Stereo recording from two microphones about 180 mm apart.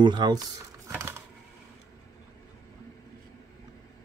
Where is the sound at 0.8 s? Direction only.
15° right (ahead or behind).